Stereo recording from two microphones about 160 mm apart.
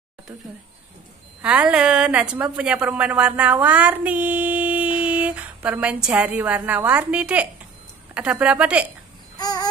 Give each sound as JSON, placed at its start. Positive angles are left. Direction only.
{"t": 1.4, "sound": "a woman's voice", "side_deg": -10}
{"t": 9.4, "sound": "baby cry", "side_deg": 25}